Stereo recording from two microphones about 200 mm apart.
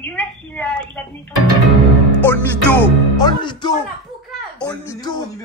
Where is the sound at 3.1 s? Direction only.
20° left (ahead or behind).